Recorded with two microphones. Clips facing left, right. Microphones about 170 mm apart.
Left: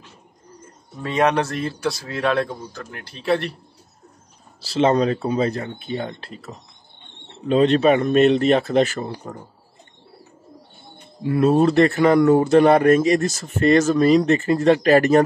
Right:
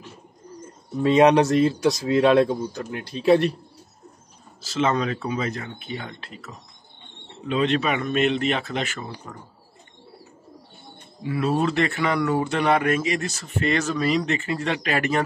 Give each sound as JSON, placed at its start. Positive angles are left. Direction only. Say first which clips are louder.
{"t": 1.0, "sound": "a man's voice", "louder": "right 4 dB", "side_deg": -15}
{"t": 4.6, "sound": "speech", "louder": "left 5 dB", "side_deg": 35}
{"t": 11.2, "sound": "speech", "louder": "left 7 dB", "side_deg": 45}